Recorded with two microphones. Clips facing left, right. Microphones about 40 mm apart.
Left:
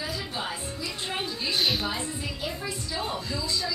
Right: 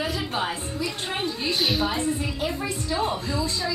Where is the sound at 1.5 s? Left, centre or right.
Centre.